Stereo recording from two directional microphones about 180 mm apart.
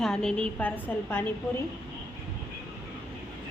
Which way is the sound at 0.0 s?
5° left (ahead or behind).